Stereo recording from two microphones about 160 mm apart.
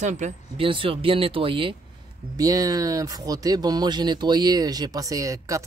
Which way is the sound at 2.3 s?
20° right (ahead or behind).